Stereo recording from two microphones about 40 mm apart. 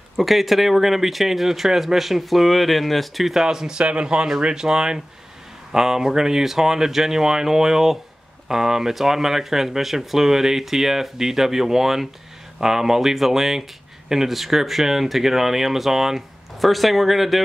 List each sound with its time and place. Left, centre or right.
0.2 s speech: centre
3.3 s speech: centre